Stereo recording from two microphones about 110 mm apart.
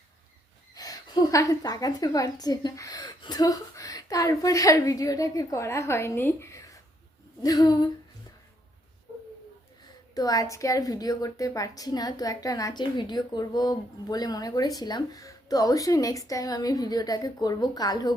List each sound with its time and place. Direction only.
0.7 s a woman's voice: 35° left (ahead or behind)
7.4 s a woman's voice: 35° left (ahead or behind)
10.2 s a woman's voice: 35° left (ahead or behind)